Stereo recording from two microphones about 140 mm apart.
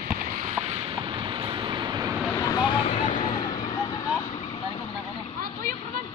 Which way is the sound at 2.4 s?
30° left (ahead or behind).